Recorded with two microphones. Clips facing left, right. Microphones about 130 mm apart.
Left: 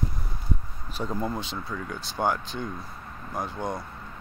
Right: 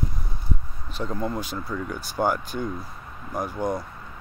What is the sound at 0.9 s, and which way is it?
Speech, 5° left (ahead or behind).